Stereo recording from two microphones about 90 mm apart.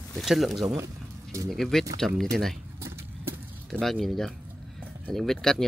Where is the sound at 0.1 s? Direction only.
Centre (ahead or behind).